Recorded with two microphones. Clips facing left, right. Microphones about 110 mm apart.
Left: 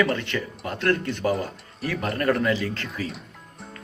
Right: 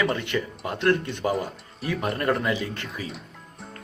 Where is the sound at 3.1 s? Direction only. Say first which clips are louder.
Left 1 dB; centre (ahead or behind).